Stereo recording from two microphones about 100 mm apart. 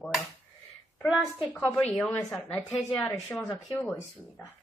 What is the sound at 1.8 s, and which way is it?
A woman's voice, 10° left (ahead or behind).